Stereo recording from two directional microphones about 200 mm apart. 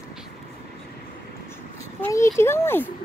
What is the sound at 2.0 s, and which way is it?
Speech, 15° left (ahead or behind).